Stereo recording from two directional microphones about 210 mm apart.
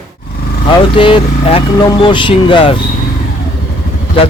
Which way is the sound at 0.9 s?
25° left (ahead or behind).